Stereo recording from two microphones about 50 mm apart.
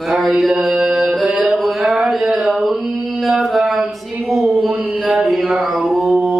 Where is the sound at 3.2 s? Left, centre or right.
Centre.